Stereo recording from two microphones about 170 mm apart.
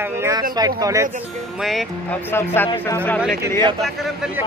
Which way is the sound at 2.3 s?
15° left (ahead or behind).